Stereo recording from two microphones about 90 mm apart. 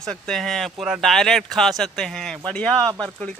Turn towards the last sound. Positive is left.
turn(degrees=10)  # may be behind; listen again after turning